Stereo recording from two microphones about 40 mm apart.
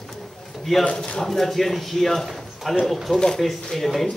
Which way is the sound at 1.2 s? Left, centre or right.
Centre.